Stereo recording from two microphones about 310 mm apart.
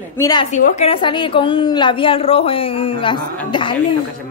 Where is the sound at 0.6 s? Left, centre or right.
Left.